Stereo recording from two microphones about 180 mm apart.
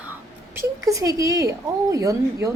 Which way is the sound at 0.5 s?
20° right (ahead or behind).